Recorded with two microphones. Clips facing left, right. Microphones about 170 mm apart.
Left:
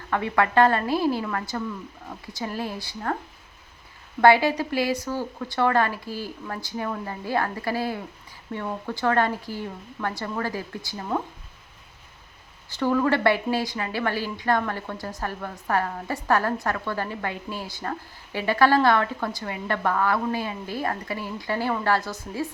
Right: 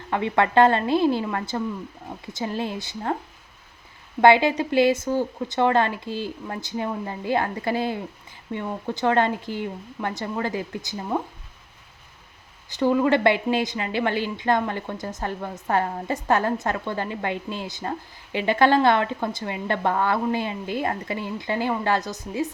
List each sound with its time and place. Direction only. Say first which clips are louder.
0.1 s a woman's voice: right 2 dB; 20° right (ahead or behind)
4.2 s a woman's voice: right 1 dB; 20° right (ahead or behind)
12.7 s a woman's voice: right 3 dB; 15° right (ahead or behind)